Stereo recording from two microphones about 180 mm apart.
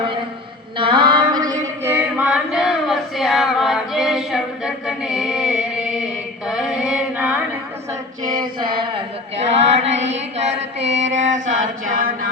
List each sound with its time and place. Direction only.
0.8 s female singing: 25° right (ahead or behind); by 6.1 s 5° right (ahead or behind)
6.5 s chant: 5° right (ahead or behind)
8.3 s mantra: 25° right (ahead or behind)
9.4 s mantra: 35° right (ahead or behind)